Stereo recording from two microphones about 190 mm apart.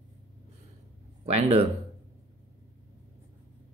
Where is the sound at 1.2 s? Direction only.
30° right (ahead or behind).